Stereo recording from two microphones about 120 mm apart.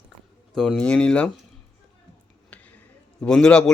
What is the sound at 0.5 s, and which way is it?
Speech, centre (ahead or behind).